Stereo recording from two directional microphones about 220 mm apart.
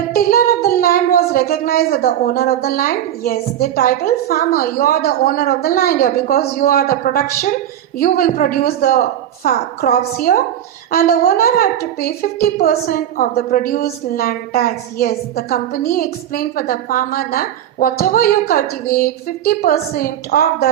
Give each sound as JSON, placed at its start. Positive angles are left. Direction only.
{"t": 0.1, "sound": "a woman's voice", "side_deg": 40}